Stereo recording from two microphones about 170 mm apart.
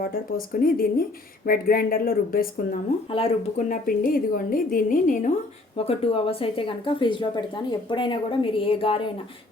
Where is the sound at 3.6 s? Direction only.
55° left (ahead or behind).